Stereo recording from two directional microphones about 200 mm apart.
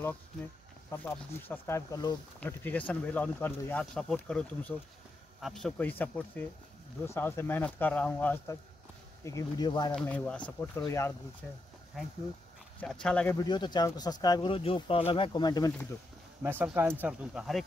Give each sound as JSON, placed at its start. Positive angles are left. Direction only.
{"t": 0.8, "sound": "speech", "side_deg": 10}
{"t": 9.9, "sound": "speech", "side_deg": 5}
{"t": 13.4, "sound": "speech", "side_deg": 20}
{"t": 16.4, "sound": "speech", "side_deg": -10}